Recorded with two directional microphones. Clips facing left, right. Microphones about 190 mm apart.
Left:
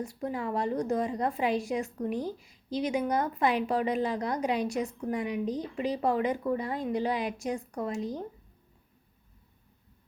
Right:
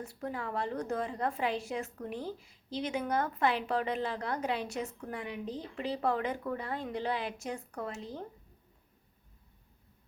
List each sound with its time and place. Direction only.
0.0 s a woman's voice: 15° left (ahead or behind)